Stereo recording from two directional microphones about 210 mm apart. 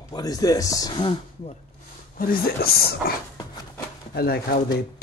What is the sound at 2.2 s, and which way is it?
Speech, 45° left (ahead or behind).